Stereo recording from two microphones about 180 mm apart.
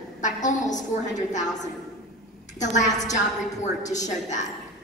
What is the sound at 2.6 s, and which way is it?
A woman's voice, 40° left (ahead or behind).